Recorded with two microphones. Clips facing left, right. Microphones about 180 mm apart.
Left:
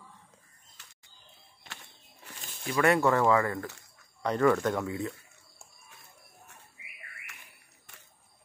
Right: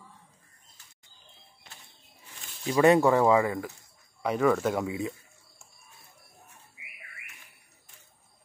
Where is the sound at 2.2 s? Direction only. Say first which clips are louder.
Left 4 dB; 75° left (ahead or behind).